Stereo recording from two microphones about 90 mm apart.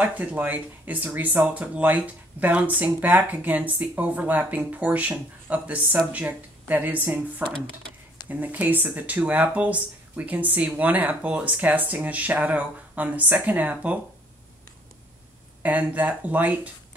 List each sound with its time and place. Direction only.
0.0 s speech: 20° right (ahead or behind)
15.6 s speech: 15° right (ahead or behind)